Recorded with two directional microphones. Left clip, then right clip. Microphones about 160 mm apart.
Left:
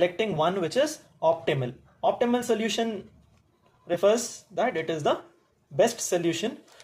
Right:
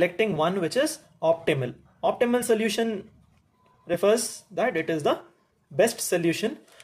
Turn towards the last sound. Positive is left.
turn(degrees=-30)  # may be behind; listen again after turning